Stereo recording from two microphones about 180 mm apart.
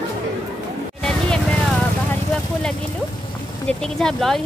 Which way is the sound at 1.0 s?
5° left (ahead or behind).